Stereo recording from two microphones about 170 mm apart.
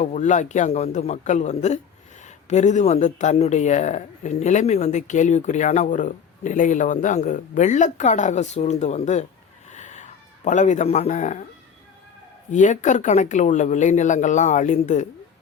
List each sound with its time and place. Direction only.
0.0 s speech: 45° left (ahead or behind)
9.6 s cat: 45° left (ahead or behind)
12.5 s speech: 45° left (ahead or behind)